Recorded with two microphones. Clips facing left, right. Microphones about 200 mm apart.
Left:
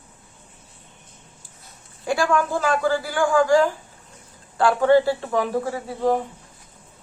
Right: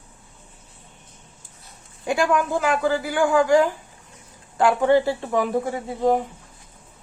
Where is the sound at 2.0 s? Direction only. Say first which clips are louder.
Even; 20° right (ahead or behind).